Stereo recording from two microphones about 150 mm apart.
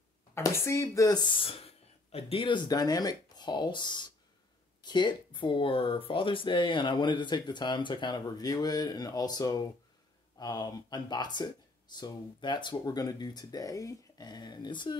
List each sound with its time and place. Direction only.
0.3 s speech: 15° left (ahead or behind)